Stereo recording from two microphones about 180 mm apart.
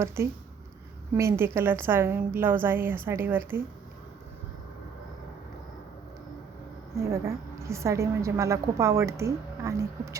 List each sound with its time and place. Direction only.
0.2 s a woman's voice: 15° right (ahead or behind)
6.9 s a woman's voice: 15° right (ahead or behind)